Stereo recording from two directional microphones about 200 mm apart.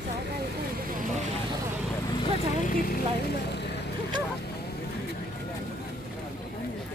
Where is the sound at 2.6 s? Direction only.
45° left (ahead or behind).